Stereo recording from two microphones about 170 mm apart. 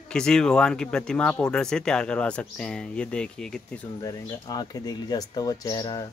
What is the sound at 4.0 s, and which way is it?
Speech, 20° left (ahead or behind).